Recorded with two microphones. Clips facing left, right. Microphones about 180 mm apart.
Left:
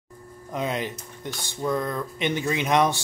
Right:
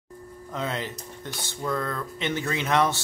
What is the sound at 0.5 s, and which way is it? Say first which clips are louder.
Speech: left 3 dB; 15° left (ahead or behind).